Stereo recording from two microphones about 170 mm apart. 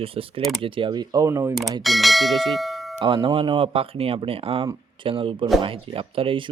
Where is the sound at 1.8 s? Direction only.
Centre (ahead or behind).